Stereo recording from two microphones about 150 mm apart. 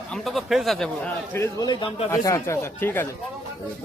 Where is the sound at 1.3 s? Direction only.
20° left (ahead or behind); by 2.0 s 35° left (ahead or behind).